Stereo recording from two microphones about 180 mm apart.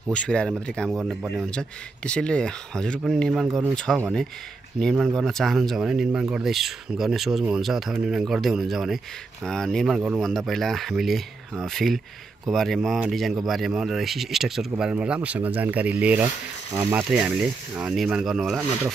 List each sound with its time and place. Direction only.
0.1 s speech: 5° left (ahead or behind)
3.4 s speech: 15° right (ahead or behind)
3.7 s speech: 5° left (ahead or behind)